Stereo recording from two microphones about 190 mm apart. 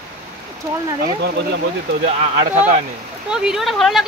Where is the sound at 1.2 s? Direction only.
65° right (ahead or behind).